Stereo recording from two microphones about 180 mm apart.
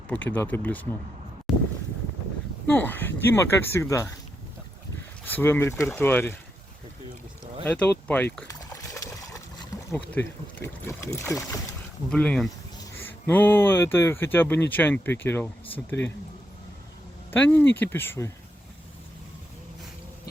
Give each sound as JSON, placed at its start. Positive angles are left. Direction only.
{"t": 0.1, "sound": "speech", "side_deg": 10}
{"t": 1.5, "sound": "boat", "side_deg": 0}
{"t": 2.6, "sound": "speech", "side_deg": 10}
{"t": 5.2, "sound": "speech", "side_deg": 10}
{"t": 7.6, "sound": "speech", "side_deg": 5}
{"t": 8.4, "sound": "a sound", "side_deg": 20}
{"t": 12.1, "sound": "speech", "side_deg": 5}
{"t": 12.7, "sound": "speech", "side_deg": 15}
{"t": 17.3, "sound": "speech", "side_deg": 10}